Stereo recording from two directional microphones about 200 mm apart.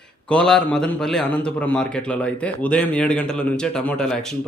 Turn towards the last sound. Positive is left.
turn(degrees=5)  # may be behind; listen again after turning